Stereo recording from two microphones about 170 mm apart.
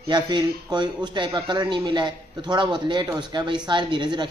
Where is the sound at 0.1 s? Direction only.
25° right (ahead or behind).